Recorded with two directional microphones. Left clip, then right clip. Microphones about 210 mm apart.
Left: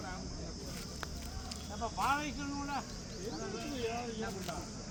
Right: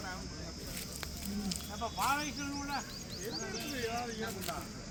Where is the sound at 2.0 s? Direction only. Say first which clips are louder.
Even; 25° right (ahead or behind).